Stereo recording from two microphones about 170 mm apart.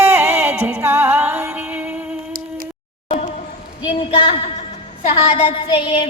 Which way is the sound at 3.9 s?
30° left (ahead or behind).